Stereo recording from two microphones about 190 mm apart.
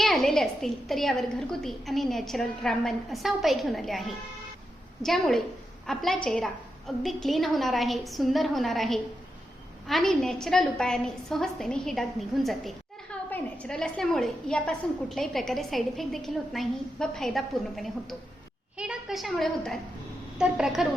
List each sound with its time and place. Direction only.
0.0 s a woman's voice: centre (ahead or behind)